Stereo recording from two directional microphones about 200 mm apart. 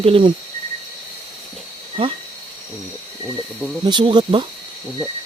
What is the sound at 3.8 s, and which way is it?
Speech, 20° right (ahead or behind).